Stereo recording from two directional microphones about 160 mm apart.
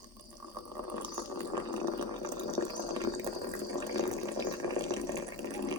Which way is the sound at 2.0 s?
25° right (ahead or behind).